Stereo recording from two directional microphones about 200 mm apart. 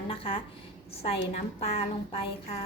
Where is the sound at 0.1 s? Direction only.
30° left (ahead or behind).